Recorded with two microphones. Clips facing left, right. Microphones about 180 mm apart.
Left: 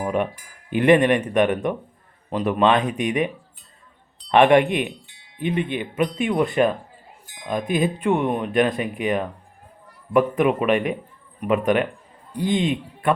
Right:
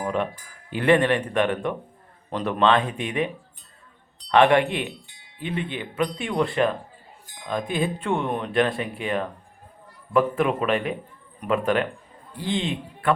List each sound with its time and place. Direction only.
0.0 s speech: 15° left (ahead or behind)
4.3 s speech: 20° left (ahead or behind)
7.7 s speech: 15° left (ahead or behind)